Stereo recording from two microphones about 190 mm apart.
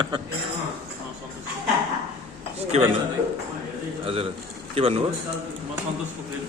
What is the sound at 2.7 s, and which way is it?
Speech, 35° right (ahead or behind).